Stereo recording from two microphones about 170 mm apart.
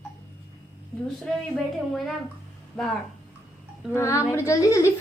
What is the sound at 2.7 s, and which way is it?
Speech, centre (ahead or behind).